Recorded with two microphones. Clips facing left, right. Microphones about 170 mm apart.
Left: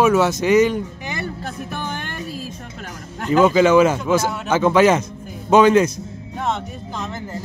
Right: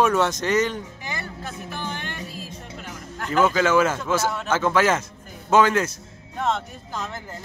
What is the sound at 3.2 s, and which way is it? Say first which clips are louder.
Speech: left 6 dB; 15° left (ahead or behind).